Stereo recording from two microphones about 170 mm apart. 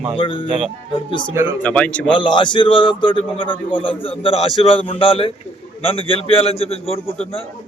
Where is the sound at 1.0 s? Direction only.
30° left (ahead or behind).